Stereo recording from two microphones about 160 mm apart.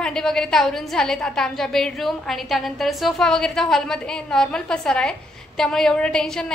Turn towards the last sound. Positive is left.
turn(degrees=5)  # may be behind; listen again after turning